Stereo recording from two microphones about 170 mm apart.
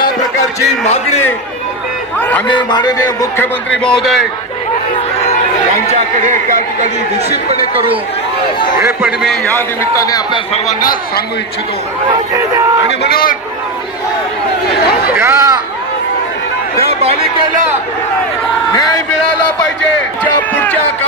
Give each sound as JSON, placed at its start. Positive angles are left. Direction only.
{"t": 0.8, "sound": "a man's voice", "side_deg": 40}
{"t": 2.1, "sound": "a man's voice", "side_deg": 10}
{"t": 2.4, "sound": "a man's voice", "side_deg": 25}
{"t": 3.7, "sound": "a man's voice", "side_deg": 5}
{"t": 5.9, "sound": "speech", "side_deg": -45}
{"t": 8.7, "sound": "speech", "side_deg": -15}
{"t": 9.6, "sound": "a man's voice", "side_deg": 20}
{"t": 10.5, "sound": "speech", "side_deg": 50}
{"t": 12.4, "sound": "speech", "side_deg": -15}
{"t": 13.0, "sound": "speech", "side_deg": 60}
{"t": 15.1, "sound": "speech", "side_deg": -15}
{"t": 17.0, "sound": "speech", "side_deg": -35}